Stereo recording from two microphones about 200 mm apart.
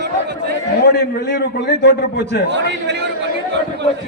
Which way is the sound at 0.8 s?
55° left (ahead or behind).